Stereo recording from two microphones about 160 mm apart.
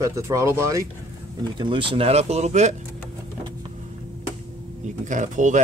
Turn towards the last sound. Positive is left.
turn(degrees=-50)  # may be behind; listen again after turning